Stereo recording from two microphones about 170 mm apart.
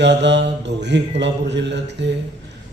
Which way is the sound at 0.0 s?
90° right.